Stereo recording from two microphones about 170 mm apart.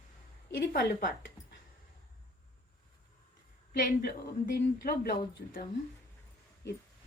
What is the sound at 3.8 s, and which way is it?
A woman's voice, 60° left (ahead or behind).